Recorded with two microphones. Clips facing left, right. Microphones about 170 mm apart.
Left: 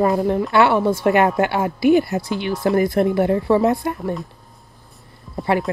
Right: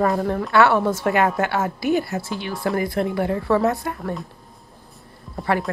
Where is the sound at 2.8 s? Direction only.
45° left (ahead or behind).